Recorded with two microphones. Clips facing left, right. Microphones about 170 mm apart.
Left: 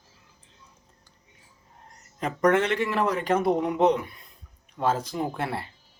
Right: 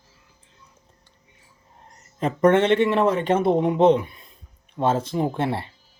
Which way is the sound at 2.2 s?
30° right (ahead or behind).